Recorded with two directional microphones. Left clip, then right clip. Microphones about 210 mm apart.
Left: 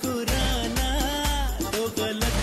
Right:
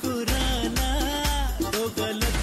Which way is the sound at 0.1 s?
Centre (ahead or behind).